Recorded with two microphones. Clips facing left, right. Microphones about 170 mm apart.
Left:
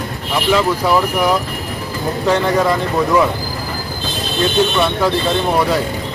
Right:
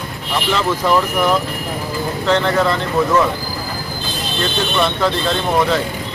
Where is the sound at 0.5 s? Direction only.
10° left (ahead or behind).